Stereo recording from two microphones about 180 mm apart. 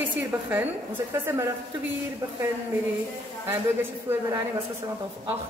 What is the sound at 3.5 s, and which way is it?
Speech, 10° right (ahead or behind).